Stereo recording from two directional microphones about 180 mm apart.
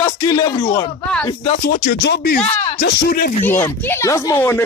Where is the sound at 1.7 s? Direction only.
55° left (ahead or behind).